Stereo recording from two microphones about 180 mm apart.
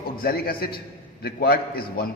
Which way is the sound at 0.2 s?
55° left (ahead or behind).